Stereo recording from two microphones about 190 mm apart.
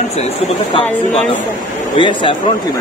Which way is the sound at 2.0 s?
25° left (ahead or behind).